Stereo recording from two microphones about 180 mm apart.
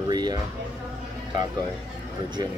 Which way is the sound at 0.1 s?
20° right (ahead or behind).